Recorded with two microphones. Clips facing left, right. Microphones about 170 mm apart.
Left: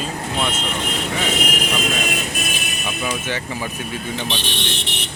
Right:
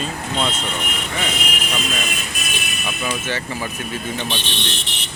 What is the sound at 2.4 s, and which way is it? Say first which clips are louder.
Vehicle: left 4 dB; 55° left (ahead or behind).